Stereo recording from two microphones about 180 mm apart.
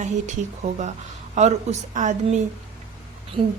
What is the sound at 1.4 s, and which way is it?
A woman's voice, 40° right (ahead or behind).